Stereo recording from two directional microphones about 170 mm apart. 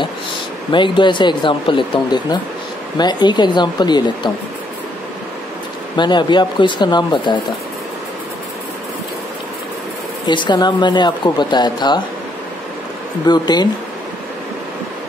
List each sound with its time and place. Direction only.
0.7 s a woman's voice: 30° left (ahead or behind)
5.9 s a woman's voice: 25° left (ahead or behind)
10.2 s a woman's voice: 25° left (ahead or behind)
13.3 s a woman's voice: 25° left (ahead or behind)